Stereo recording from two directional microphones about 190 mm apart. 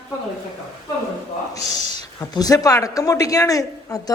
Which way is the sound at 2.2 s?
20° left (ahead or behind).